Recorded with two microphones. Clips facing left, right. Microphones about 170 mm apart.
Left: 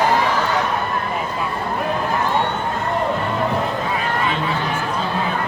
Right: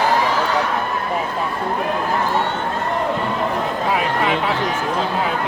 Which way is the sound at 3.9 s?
90° right.